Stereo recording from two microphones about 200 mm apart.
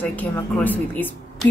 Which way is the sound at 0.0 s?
10° left (ahead or behind).